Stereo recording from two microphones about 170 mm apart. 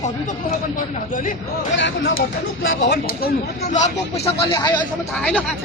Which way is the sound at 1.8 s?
90° left.